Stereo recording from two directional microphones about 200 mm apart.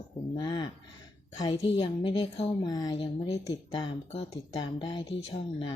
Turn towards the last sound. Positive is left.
turn(degrees=25)  # may be behind; listen again after turning